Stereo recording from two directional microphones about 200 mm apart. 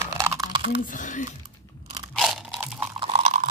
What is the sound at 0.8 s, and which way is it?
Speech, 40° left (ahead or behind).